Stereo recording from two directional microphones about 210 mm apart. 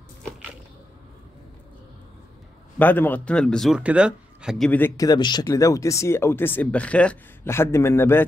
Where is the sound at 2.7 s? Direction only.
10° left (ahead or behind).